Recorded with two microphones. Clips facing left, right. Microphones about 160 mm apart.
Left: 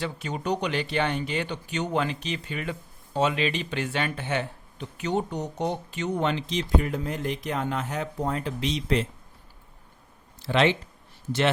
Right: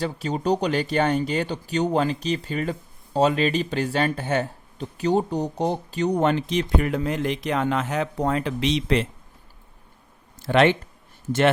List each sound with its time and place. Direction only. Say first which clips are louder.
0.0 s speech: right 5 dB; 35° right (ahead or behind); by 9.0 s 75° right (ahead or behind)
10.4 s speech: right 4 dB; 55° right (ahead or behind)